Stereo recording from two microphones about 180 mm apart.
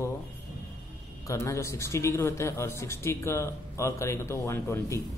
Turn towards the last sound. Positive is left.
turn(degrees=15)  # may be behind; listen again after turning